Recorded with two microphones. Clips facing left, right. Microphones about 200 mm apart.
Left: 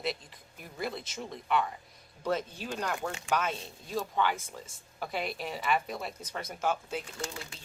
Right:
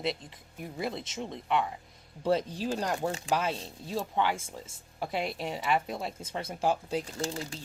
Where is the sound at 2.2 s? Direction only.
35° right (ahead or behind).